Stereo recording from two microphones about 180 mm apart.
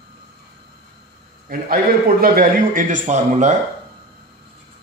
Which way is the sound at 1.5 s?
55° right (ahead or behind).